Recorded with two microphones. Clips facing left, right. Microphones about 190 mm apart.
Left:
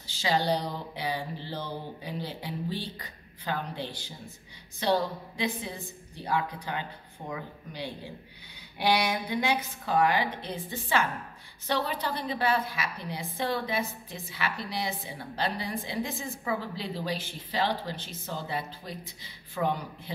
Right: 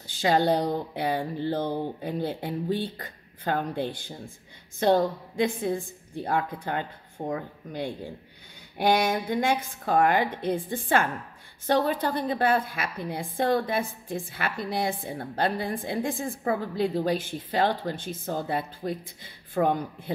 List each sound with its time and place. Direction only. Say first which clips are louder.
0.0 s a woman's voice: right 5 dB; 50° right (ahead or behind)